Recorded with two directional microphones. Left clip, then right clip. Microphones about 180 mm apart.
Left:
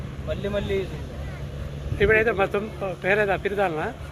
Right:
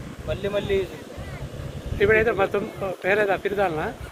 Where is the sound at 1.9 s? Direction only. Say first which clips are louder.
Right 1 dB; 5° right (ahead or behind).